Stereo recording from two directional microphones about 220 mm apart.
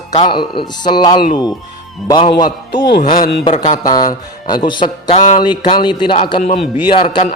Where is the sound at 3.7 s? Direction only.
40° left (ahead or behind).